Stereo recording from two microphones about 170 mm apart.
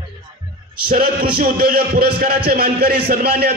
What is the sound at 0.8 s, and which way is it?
A man's voice, 60° right (ahead or behind).